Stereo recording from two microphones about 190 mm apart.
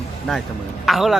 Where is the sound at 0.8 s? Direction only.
Centre (ahead or behind).